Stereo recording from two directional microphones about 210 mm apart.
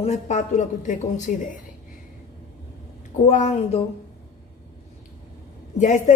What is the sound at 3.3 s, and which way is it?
Speech, 30° left (ahead or behind).